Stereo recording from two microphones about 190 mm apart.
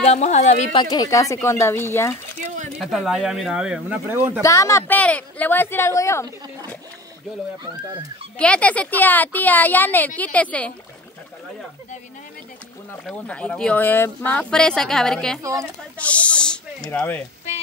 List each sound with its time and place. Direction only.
0.0 s speech: 35° left (ahead or behind)
0.7 s a woman's voice: 20° left (ahead or behind)
2.8 s speech: centre (ahead or behind)
4.4 s a woman's voice: 15° left (ahead or behind)
8.4 s a woman's voice: 5° left (ahead or behind)
13.0 s speech: 5° left (ahead or behind)